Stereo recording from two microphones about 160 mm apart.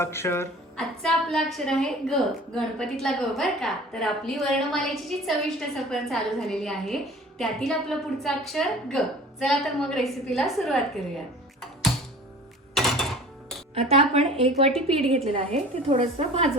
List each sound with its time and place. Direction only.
0.0 s a woman's voice: 15° left (ahead or behind)
0.8 s a woman's voice: centre (ahead or behind)
11.6 s music: centre (ahead or behind)
13.7 s a woman's voice: 40° right (ahead or behind)